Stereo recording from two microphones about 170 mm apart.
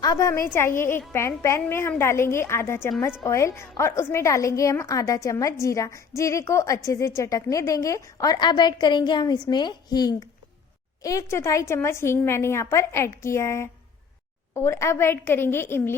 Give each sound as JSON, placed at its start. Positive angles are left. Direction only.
{"t": 0.0, "sound": "a woman's voice", "side_deg": 25}